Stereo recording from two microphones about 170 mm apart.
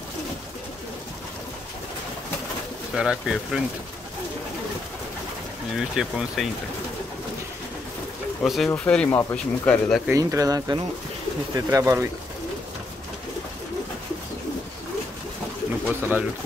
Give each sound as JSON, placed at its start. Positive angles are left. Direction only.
{"t": 2.9, "sound": "speech", "side_deg": 0}
{"t": 5.8, "sound": "speech", "side_deg": -5}
{"t": 8.4, "sound": "speech", "side_deg": 0}
{"t": 10.0, "sound": "speech", "side_deg": -20}
{"t": 16.0, "sound": "speech", "side_deg": -10}